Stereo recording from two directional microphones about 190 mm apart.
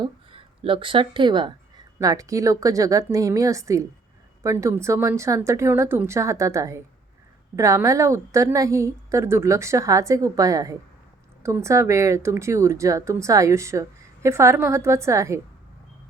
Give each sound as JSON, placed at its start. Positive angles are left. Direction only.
{"t": 0.0, "sound": "speech", "side_deg": -30}